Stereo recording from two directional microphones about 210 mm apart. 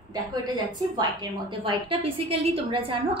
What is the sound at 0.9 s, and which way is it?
A woman's voice, 20° right (ahead or behind).